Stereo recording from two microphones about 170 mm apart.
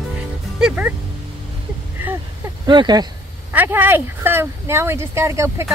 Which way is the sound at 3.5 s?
10° right (ahead or behind).